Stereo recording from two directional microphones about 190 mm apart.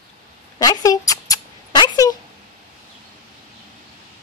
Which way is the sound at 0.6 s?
20° left (ahead or behind).